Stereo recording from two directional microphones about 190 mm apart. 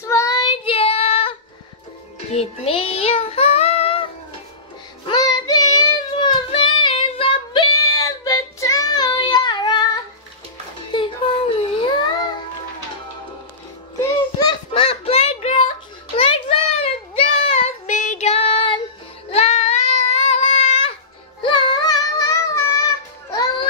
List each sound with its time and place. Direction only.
0.0 s child singing: 15° left (ahead or behind); by 1.3 s 30° left (ahead or behind)
2.3 s child singing: 30° left (ahead or behind)
10.9 s a sound: 25° left (ahead or behind)
14.0 s a sound: 25° left (ahead or behind)
16.2 s child singing: 30° left (ahead or behind)
21.4 s music: 25° left (ahead or behind)